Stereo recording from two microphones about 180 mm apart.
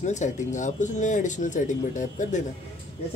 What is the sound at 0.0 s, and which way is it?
Speech, 40° left (ahead or behind).